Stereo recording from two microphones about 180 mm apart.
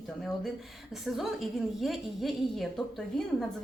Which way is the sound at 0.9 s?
Centre (ahead or behind).